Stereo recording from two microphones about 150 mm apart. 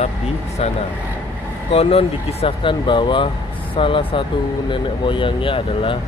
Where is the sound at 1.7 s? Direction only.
40° left (ahead or behind).